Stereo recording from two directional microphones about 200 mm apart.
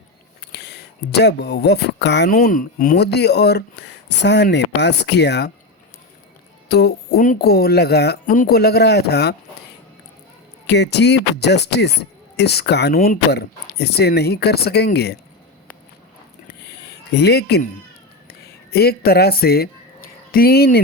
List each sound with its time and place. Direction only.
0.5 s speech: 55° left (ahead or behind)
6.7 s speech: 55° left (ahead or behind)
10.7 s speech: 60° left (ahead or behind)
16.6 s a sound: 55° left (ahead or behind)